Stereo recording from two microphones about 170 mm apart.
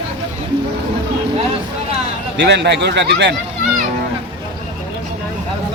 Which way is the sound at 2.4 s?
90° right.